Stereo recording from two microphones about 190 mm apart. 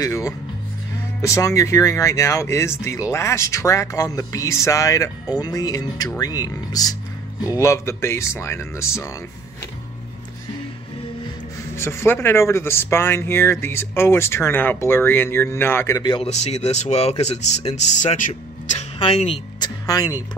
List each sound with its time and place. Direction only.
0.0 s music: 20° left (ahead or behind)
1.2 s speech: 15° left (ahead or behind)
11.7 s speech: 15° left (ahead or behind)
16.0 s speech: 25° left (ahead or behind)
16.3 s speech: 35° left (ahead or behind); by 20.2 s 20° left (ahead or behind)